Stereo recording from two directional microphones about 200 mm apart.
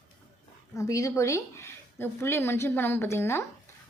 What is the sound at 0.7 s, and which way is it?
Speech, 15° left (ahead or behind).